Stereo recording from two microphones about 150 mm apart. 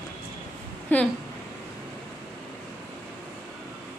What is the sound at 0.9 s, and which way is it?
Speech, 10° left (ahead or behind).